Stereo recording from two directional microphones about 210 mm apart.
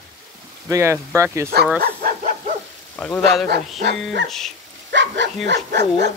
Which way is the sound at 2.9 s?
5° left (ahead or behind).